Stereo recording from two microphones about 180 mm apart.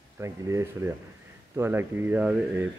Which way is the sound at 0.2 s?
15° right (ahead or behind).